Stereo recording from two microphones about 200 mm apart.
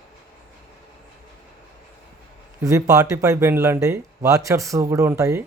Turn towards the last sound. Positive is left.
turn(degrees=-15)  # may be behind; listen again after turning